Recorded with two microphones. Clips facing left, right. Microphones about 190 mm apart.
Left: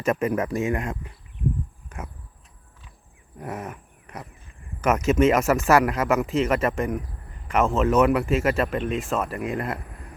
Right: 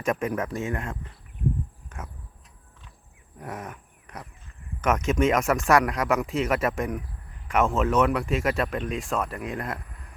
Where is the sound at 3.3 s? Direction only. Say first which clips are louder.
Left 3 dB; 5° left (ahead or behind).